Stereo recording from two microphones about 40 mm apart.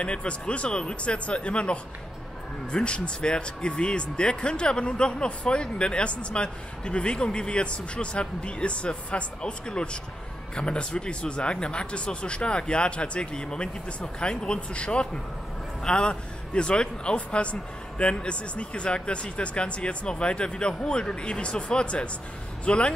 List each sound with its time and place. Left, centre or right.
0.0 s speech: left